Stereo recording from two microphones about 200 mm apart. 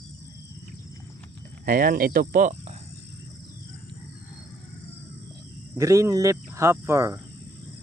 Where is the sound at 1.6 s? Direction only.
45° right (ahead or behind).